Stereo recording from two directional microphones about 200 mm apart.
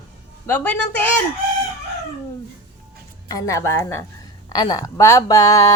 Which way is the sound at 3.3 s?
15° left (ahead or behind).